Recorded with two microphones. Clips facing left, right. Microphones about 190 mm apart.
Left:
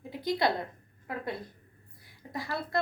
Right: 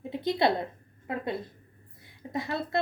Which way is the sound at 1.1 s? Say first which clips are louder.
Right 4 dB; 25° right (ahead or behind).